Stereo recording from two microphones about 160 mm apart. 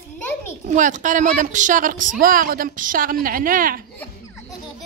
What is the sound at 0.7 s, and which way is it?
A woman's voice, 50° right (ahead or behind).